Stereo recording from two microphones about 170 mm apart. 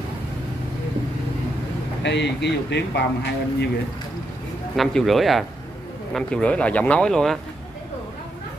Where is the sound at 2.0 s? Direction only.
90° left.